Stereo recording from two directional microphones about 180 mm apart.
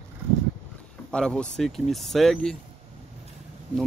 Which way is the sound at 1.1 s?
5° left (ahead or behind).